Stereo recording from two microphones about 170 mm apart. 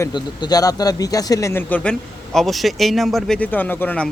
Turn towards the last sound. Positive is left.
turn(degrees=10)  # may be behind; listen again after turning